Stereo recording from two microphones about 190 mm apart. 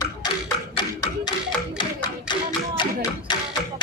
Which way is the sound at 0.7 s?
20° left (ahead or behind).